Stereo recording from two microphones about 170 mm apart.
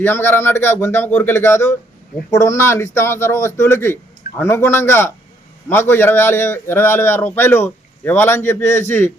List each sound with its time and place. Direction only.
0.0 s a man's voice: 15° left (ahead or behind)